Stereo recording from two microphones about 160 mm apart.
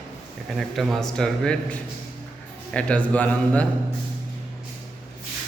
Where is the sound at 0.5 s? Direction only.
Centre (ahead or behind).